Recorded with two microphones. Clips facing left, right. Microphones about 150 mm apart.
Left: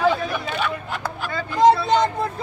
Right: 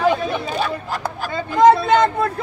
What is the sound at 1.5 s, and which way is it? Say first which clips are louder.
Speech: right 3 dB; 50° right (ahead or behind).